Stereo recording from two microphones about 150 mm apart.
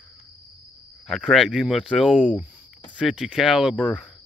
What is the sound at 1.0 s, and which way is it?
Speech, centre (ahead or behind).